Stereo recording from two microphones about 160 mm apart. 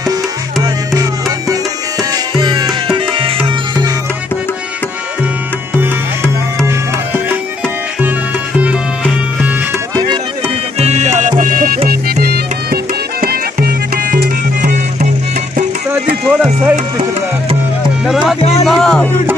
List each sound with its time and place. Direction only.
1.5 s tabla: 25° right (ahead or behind)
3.4 s music: 30° right (ahead or behind)
10.8 s music: 45° right (ahead or behind)
11.9 s music: 70° right (ahead or behind)
16.3 s music: 5° right (ahead or behind)
18.0 s music: centre (ahead or behind)